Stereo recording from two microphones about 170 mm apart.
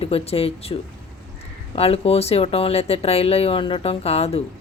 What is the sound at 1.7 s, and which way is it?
A woman's voice, 35° left (ahead or behind).